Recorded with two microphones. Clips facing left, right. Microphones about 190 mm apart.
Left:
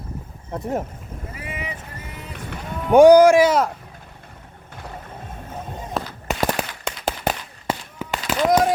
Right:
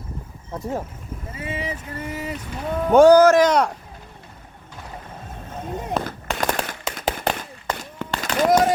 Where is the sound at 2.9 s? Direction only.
15° left (ahead or behind).